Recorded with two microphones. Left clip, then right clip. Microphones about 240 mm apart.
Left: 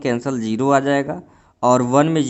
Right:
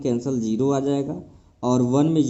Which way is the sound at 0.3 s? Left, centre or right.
Left.